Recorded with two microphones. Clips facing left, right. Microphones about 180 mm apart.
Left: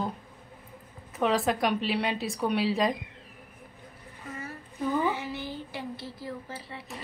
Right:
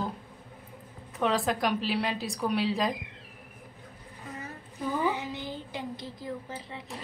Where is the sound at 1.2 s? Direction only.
Centre (ahead or behind).